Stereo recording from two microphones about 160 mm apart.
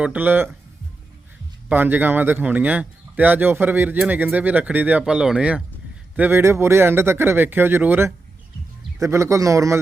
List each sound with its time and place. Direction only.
0.0 s speech: 10° right (ahead or behind)
1.7 s a man's voice: 10° right (ahead or behind)